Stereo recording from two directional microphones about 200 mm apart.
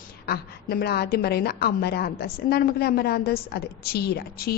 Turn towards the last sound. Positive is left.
turn(degrees=50)  # may be behind; listen again after turning